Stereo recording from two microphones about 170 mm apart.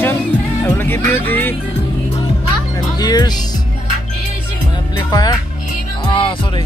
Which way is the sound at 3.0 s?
25° left (ahead or behind).